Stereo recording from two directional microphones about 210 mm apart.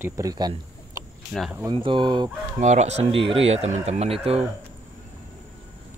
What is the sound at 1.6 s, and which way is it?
Speech, 25° right (ahead or behind).